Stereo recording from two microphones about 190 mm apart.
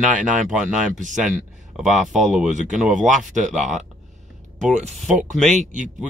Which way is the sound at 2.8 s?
40° right (ahead or behind).